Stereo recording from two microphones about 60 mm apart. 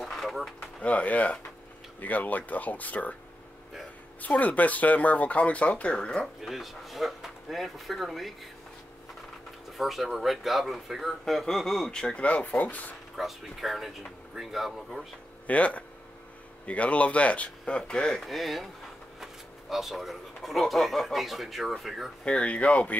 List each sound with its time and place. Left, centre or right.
0.0 s a sound: centre
0.6 s speech: left
4.2 s speech: left
6.4 s speech: centre
9.8 s speech: centre; by 12.9 s left
13.1 s speech: centre
15.4 s speech: left; by 22.1 s centre
22.2 s speech: centre